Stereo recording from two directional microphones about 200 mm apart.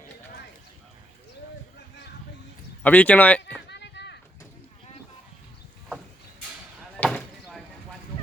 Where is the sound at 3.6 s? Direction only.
60° left (ahead or behind).